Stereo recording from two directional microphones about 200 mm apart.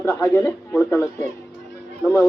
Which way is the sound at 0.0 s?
10° left (ahead or behind).